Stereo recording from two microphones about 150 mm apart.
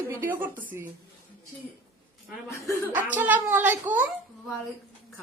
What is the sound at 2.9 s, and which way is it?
A woman's voice, 10° right (ahead or behind).